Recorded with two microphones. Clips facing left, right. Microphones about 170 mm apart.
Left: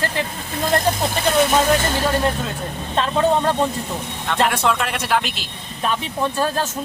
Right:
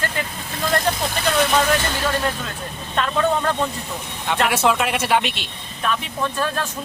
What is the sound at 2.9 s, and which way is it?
Speech, 30° left (ahead or behind).